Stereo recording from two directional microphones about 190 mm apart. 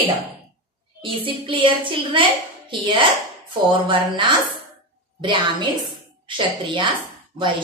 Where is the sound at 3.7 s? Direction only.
25° right (ahead or behind).